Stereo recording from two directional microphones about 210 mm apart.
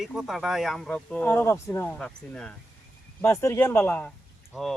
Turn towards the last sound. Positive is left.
turn(degrees=0)  # may be behind; listen again after turning